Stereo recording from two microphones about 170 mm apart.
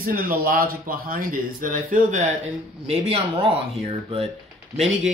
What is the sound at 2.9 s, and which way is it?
Speech, 35° right (ahead or behind).